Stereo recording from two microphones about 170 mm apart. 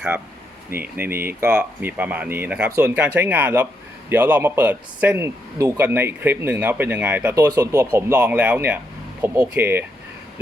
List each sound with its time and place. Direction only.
0.7 s speech: 10° right (ahead or behind)